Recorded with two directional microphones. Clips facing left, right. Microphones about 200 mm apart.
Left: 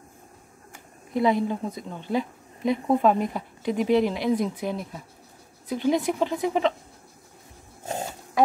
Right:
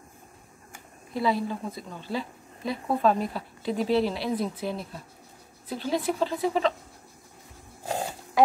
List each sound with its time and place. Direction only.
1.1 s a woman's voice: 20° left (ahead or behind)